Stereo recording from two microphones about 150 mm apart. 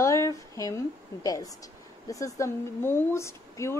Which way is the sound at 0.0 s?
20° left (ahead or behind).